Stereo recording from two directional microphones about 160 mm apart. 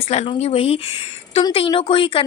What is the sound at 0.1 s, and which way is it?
Speech, 40° left (ahead or behind).